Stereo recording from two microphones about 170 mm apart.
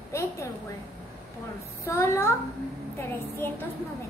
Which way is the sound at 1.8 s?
15° left (ahead or behind).